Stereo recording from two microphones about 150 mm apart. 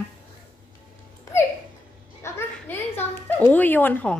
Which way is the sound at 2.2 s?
15° left (ahead or behind).